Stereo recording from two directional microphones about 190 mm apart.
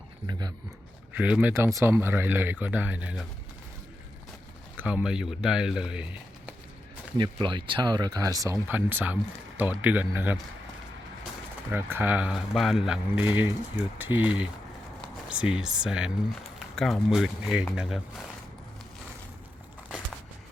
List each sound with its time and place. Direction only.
0.3 s speech: 20° right (ahead or behind)
1.1 s speech: 10° right (ahead or behind)
4.8 s speech: 10° right (ahead or behind)
7.2 s speech: 25° right (ahead or behind); by 10.4 s 10° right (ahead or behind)
11.7 s speech: 10° right (ahead or behind)